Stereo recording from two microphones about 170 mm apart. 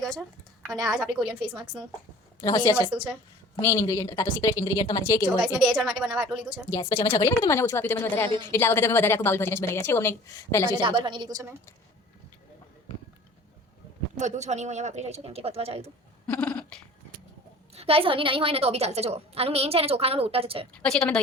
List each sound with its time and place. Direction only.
0.9 s speech: centre (ahead or behind)
2.4 s a woman's voice: 20° left (ahead or behind)
5.4 s speech: 5° right (ahead or behind)
6.9 s a woman's voice: 15° left (ahead or behind)
10.7 s a woman's voice: 30° right (ahead or behind)
14.2 s a woman's voice: 45° right (ahead or behind)
16.2 s a sound: 5° left (ahead or behind)
17.7 s a woman's voice: 35° right (ahead or behind)
20.7 s speech: 5° left (ahead or behind)